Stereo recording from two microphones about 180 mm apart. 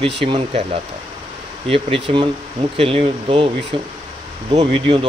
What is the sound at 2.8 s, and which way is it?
A man's voice, 30° right (ahead or behind).